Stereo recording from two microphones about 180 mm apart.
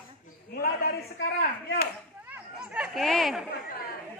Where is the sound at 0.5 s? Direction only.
60° left (ahead or behind).